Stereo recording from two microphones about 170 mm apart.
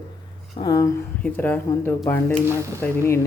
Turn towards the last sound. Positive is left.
turn(degrees=15)  # may be behind; listen again after turning